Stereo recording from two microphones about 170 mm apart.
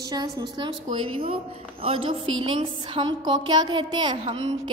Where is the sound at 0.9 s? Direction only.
35° right (ahead or behind).